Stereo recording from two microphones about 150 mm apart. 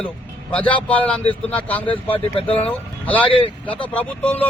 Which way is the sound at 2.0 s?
40° left (ahead or behind).